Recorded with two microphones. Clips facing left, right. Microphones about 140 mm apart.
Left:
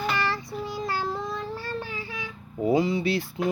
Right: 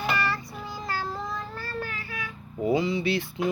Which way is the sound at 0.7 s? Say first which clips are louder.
Left 2 dB; 20° left (ahead or behind).